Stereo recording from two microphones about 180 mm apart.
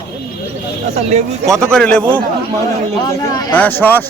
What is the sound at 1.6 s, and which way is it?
Speech, 5° left (ahead or behind).